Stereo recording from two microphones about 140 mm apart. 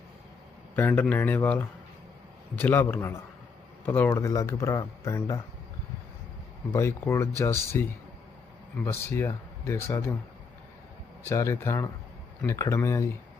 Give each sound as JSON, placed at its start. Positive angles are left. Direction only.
{"t": 0.8, "sound": "speech", "side_deg": 15}
{"t": 6.7, "sound": "speech", "side_deg": 20}
{"t": 11.3, "sound": "speech", "side_deg": 20}